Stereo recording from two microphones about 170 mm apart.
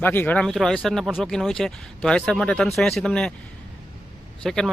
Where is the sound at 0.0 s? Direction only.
10° left (ahead or behind).